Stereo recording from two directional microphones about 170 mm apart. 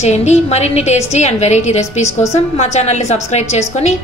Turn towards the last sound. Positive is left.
turn(degrees=40)  # may be behind; listen again after turning